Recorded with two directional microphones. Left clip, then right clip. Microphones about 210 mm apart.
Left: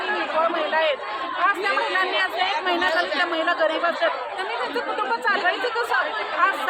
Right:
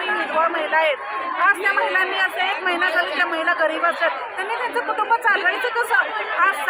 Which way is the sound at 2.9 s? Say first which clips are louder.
Right 2 dB; centre (ahead or behind).